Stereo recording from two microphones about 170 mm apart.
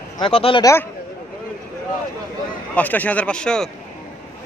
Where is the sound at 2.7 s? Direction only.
10° left (ahead or behind).